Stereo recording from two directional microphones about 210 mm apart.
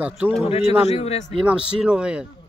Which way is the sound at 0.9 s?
30° left (ahead or behind).